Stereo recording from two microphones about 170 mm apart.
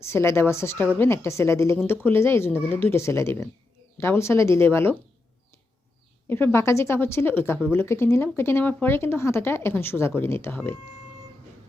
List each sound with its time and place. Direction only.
0.0 s speech: 15° left (ahead or behind)
6.2 s speech: 15° left (ahead or behind)